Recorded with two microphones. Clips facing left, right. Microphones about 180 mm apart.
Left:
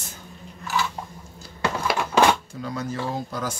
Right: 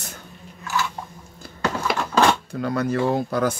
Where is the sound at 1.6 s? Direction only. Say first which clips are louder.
Right 1 dB; 10° left (ahead or behind).